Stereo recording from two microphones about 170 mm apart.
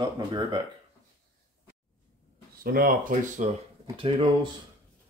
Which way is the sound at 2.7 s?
50° right (ahead or behind).